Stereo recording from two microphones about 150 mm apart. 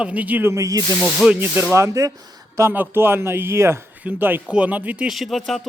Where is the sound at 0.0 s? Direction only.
10° right (ahead or behind).